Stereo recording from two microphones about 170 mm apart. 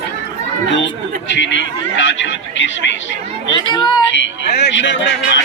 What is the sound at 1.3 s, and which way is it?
Speech, 90° left.